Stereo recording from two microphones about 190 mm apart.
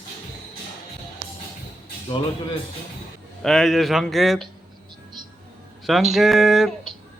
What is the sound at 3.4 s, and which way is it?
Speech, centre (ahead or behind).